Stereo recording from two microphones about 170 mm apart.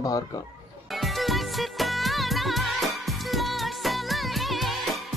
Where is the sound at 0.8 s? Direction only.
Centre (ahead or behind).